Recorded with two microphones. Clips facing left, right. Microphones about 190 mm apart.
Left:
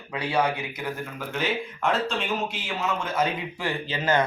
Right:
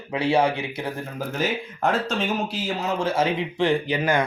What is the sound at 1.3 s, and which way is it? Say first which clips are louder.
A man's voice: right 1 dB; 40° right (ahead or behind).